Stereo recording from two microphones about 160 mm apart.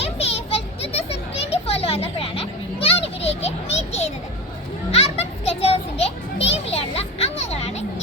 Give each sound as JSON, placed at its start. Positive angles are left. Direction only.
{"t": 0.0, "sound": "children playing", "side_deg": 40}
{"t": 2.8, "sound": "a sound", "side_deg": 40}
{"t": 4.9, "sound": "children playing", "side_deg": 40}